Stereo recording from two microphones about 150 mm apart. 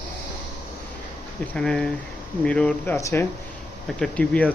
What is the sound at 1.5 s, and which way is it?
Speech, 5° left (ahead or behind).